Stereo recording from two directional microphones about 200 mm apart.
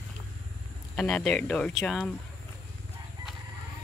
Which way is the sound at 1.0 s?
5° left (ahead or behind).